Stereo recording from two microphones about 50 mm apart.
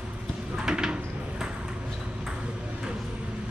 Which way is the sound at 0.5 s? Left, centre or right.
Centre.